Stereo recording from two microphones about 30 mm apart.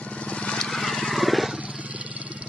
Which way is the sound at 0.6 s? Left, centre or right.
Centre.